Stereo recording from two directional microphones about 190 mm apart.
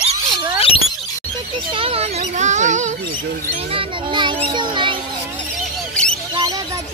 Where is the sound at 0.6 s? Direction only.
30° left (ahead or behind).